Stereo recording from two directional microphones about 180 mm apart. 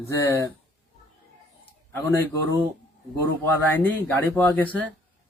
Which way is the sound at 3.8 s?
10° left (ahead or behind).